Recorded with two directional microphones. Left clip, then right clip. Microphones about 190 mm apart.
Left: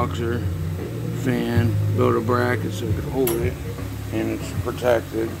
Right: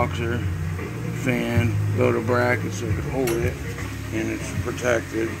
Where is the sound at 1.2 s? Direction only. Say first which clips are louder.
Even; centre (ahead or behind).